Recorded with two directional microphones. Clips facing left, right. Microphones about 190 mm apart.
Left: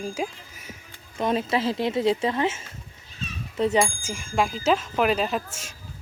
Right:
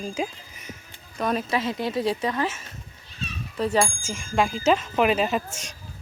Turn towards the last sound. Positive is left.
turn(degrees=0)  # may be behind; listen again after turning